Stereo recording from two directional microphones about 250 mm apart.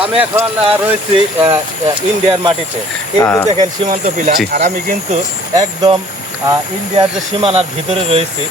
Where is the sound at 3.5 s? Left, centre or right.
Right.